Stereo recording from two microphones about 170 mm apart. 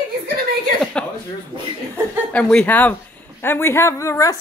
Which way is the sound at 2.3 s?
10° left (ahead or behind).